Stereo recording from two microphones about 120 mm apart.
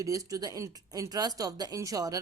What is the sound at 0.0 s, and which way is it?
A woman's voice, 30° right (ahead or behind).